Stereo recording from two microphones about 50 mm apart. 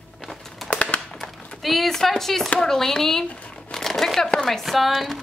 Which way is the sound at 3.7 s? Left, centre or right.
Centre.